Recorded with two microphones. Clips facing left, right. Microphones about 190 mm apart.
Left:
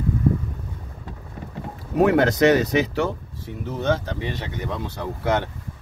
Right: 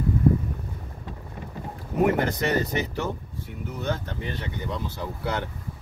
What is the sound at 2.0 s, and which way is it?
Speech, 85° left.